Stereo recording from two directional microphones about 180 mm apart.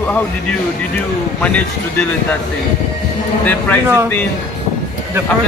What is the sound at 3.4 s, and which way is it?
Speech, 10° left (ahead or behind).